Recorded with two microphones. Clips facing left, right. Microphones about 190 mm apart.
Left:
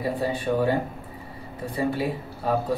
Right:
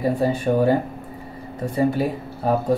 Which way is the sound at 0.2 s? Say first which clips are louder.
Right 4 dB; 45° right (ahead or behind).